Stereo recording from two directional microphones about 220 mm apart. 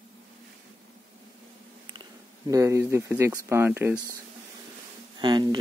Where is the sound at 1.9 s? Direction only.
15° right (ahead or behind).